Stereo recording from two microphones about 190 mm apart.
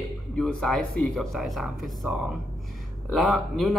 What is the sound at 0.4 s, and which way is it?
A man's voice, 5° left (ahead or behind).